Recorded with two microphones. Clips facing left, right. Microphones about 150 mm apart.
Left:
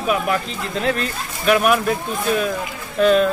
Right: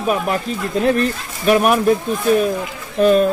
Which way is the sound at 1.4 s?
35° right (ahead or behind).